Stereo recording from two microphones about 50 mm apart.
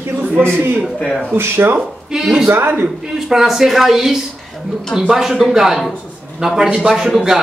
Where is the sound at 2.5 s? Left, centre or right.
Right.